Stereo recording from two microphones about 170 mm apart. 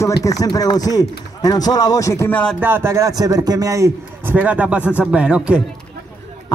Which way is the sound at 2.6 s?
15° right (ahead or behind).